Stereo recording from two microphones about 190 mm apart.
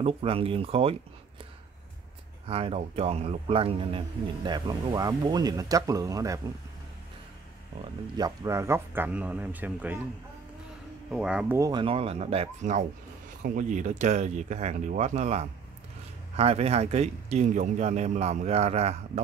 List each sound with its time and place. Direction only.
0.0 s speech: 30° right (ahead or behind)
2.4 s speech: 30° right (ahead or behind)
7.8 s speech: 20° right (ahead or behind)
11.1 s speech: 5° right (ahead or behind)
11.8 s speech: 30° right (ahead or behind)